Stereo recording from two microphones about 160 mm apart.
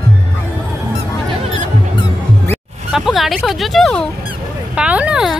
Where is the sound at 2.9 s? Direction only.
Centre (ahead or behind).